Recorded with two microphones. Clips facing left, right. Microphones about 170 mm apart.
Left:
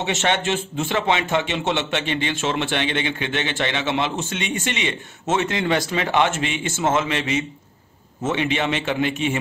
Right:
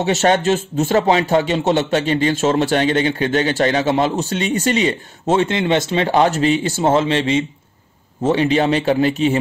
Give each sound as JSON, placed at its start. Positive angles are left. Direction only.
{"t": 0.0, "sound": "speech", "side_deg": -40}